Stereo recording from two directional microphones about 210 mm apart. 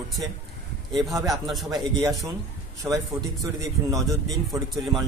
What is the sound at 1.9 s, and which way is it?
Speech, 20° right (ahead or behind).